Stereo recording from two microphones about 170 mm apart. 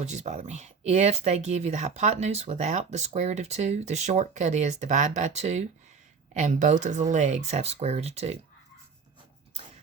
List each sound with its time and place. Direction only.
0.0 s speech: 40° right (ahead or behind)